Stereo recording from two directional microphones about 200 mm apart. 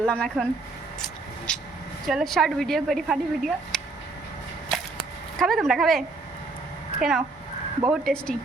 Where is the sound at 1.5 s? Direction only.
5° left (ahead or behind).